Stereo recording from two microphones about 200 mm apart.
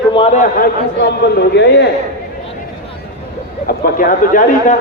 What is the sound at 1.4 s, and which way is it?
Speech, 55° left (ahead or behind).